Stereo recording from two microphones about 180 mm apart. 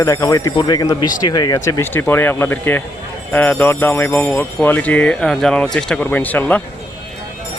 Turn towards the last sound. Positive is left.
turn(degrees=10)  # may be behind; listen again after turning